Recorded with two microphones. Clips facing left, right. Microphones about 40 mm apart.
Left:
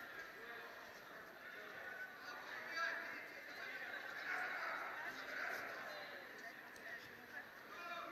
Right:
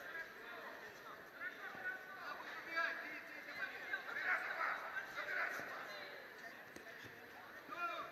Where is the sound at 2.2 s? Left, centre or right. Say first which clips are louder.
Right 2 dB; right.